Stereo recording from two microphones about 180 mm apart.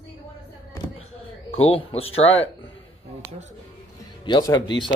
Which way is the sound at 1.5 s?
35° left (ahead or behind).